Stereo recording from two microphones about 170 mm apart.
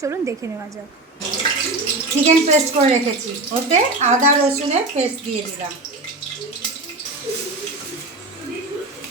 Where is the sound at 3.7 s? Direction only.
45° right (ahead or behind).